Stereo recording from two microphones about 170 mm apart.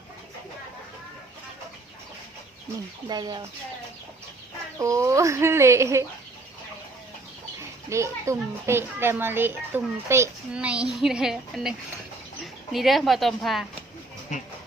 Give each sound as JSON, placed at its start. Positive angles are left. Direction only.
{"t": 3.1, "sound": "speech", "side_deg": -25}
{"t": 4.8, "sound": "a child's voice", "side_deg": -20}
{"t": 7.9, "sound": "a child's voice", "side_deg": -15}
{"t": 12.7, "sound": "speech", "side_deg": 0}